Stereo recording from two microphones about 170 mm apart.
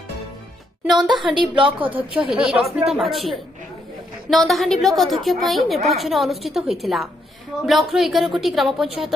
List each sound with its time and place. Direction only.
0.9 s speech: 25° right (ahead or behind)
2.1 s a woman's voice: 5° right (ahead or behind)